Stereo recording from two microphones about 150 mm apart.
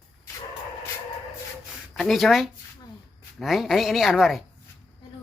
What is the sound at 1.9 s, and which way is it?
Speech, centre (ahead or behind).